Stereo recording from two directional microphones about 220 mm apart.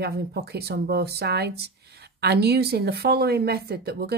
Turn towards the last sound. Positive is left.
turn(degrees=-45)  # may be behind; listen again after turning